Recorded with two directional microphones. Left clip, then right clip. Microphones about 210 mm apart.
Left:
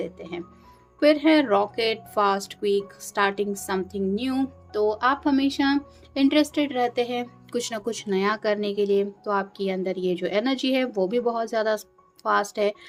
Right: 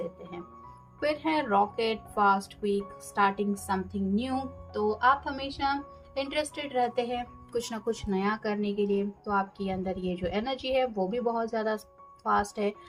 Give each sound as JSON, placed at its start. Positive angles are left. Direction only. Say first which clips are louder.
{"t": 0.9, "sound": "speech", "louder": "left 10 dB", "side_deg": 50}